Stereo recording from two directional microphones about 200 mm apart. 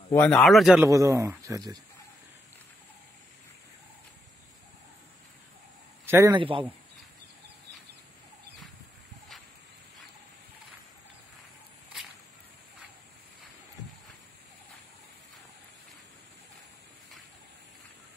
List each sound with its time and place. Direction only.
0.1 s a man's voice: 5° left (ahead or behind)
0.8 s a man's voice: 15° right (ahead or behind)
6.0 s a man's voice: 15° right (ahead or behind)